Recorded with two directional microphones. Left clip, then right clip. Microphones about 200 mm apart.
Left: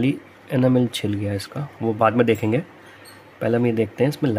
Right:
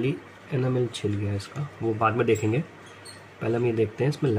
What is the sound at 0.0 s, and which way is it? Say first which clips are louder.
Speech: left 5 dB; 55° left (ahead or behind).